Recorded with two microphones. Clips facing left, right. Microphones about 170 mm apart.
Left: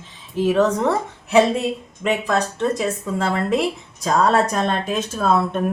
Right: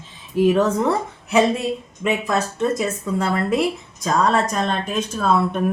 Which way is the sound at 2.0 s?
5° right (ahead or behind).